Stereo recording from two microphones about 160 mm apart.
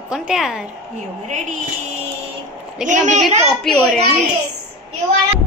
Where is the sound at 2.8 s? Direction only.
50° right (ahead or behind).